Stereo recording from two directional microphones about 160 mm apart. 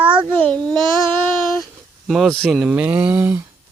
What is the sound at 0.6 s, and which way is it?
Child singing, 25° right (ahead or behind).